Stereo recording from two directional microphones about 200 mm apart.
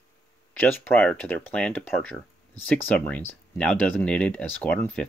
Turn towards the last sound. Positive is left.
turn(degrees=5)  # may be behind; listen again after turning